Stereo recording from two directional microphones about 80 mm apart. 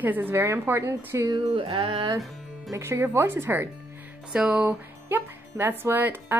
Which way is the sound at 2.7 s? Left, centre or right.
Right.